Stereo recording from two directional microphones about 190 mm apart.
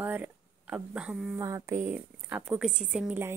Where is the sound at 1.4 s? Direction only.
15° right (ahead or behind).